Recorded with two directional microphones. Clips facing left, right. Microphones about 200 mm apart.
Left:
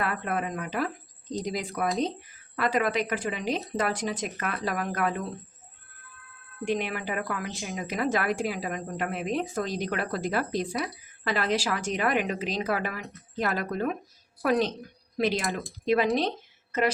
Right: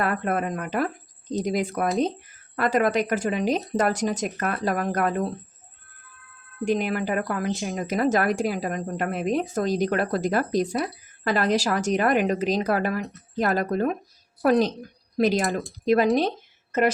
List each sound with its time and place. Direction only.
0.0 s a woman's voice: 45° right (ahead or behind)
6.7 s a woman's voice: 40° right (ahead or behind)